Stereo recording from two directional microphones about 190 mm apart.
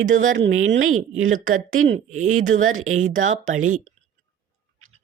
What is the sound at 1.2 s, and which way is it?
Speech, 45° right (ahead or behind).